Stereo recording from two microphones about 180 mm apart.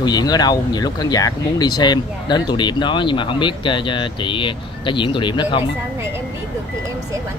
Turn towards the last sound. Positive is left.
turn(degrees=25)  # may be behind; listen again after turning